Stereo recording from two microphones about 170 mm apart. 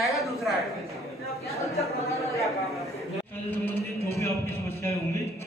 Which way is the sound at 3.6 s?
15° left (ahead or behind).